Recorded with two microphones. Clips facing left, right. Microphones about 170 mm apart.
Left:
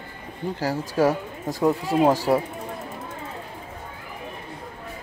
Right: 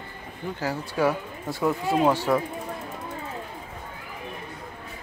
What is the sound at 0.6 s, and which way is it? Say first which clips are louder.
Speech: left 4 dB; 40° left (ahead or behind).